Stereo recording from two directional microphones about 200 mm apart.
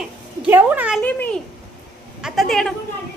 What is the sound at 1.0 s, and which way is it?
A man's voice, 5° left (ahead or behind).